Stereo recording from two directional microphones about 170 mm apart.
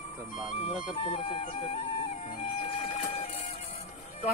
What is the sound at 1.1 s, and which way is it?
Music, 35° left (ahead or behind).